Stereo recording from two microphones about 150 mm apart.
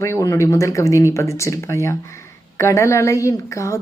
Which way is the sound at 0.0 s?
20° left (ahead or behind).